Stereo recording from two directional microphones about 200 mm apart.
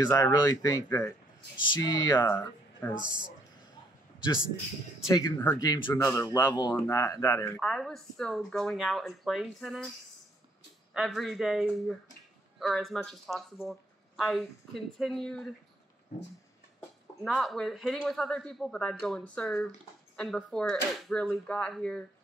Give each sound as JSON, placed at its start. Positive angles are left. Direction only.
{"t": 0.0, "sound": "speech", "side_deg": 20}
{"t": 3.0, "sound": "speech", "side_deg": -20}
{"t": 5.1, "sound": "speech", "side_deg": 15}
{"t": 7.6, "sound": "speech", "side_deg": 0}
{"t": 10.9, "sound": "speech", "side_deg": 0}
{"t": 17.2, "sound": "speech", "side_deg": 0}